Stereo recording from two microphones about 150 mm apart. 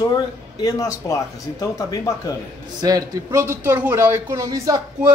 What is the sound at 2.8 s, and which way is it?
A man's voice, 25° right (ahead or behind).